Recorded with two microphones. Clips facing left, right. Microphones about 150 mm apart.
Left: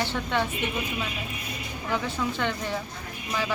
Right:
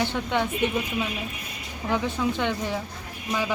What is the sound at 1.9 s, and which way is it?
Speech, 15° right (ahead or behind).